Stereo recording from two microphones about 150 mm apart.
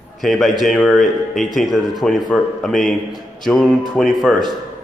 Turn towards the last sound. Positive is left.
turn(degrees=0)  # may be behind; listen again after turning